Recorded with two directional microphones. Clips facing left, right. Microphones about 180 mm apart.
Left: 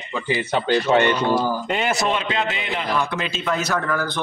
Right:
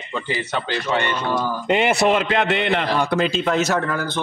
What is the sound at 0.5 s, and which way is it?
Speech, 45° left (ahead or behind).